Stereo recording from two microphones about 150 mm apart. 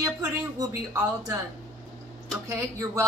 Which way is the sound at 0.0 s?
20° right (ahead or behind).